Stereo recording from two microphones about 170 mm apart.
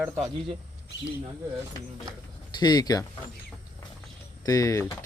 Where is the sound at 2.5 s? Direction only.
25° left (ahead or behind).